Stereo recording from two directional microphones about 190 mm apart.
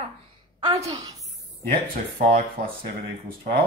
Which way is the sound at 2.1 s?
50° right (ahead or behind).